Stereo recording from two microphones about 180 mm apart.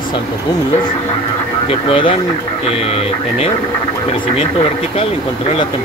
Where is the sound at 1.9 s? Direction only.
30° left (ahead or behind).